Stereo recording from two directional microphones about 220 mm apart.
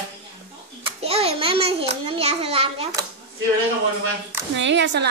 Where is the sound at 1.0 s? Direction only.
25° right (ahead or behind).